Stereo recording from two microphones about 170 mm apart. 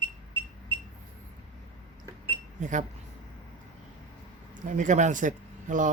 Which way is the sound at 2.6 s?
45° right (ahead or behind).